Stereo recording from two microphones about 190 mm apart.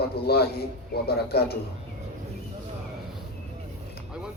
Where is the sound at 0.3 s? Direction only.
55° left (ahead or behind).